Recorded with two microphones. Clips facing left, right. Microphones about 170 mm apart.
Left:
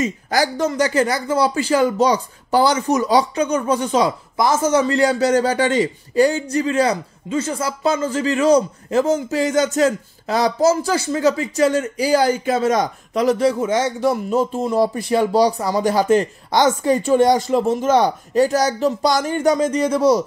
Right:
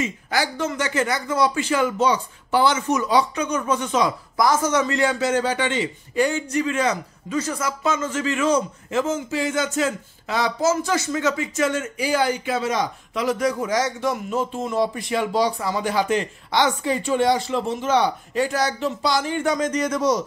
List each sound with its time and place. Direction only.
0.0 s speech: 40° left (ahead or behind)